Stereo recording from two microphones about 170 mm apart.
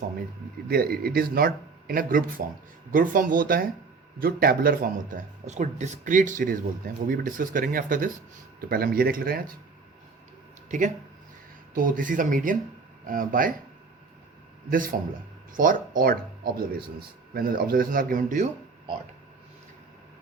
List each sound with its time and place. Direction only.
0.7 s a man's voice: 60° right (ahead or behind)
8.7 s a man's voice: 65° right (ahead or behind)
10.7 s a man's voice: 45° right (ahead or behind)
14.7 s a man's voice: 55° right (ahead or behind)